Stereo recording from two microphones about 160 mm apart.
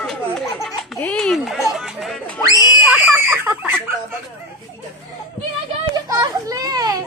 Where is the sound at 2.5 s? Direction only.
20° left (ahead or behind).